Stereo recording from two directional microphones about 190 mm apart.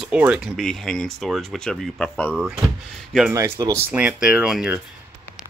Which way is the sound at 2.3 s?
5° right (ahead or behind).